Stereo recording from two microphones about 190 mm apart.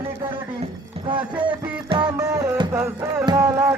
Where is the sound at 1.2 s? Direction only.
5° right (ahead or behind).